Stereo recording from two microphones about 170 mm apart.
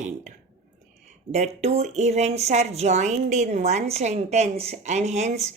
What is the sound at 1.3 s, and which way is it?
A woman's voice, 40° right (ahead or behind).